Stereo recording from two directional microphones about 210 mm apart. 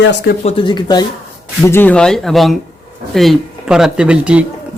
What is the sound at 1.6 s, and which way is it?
Speech, 10° left (ahead or behind).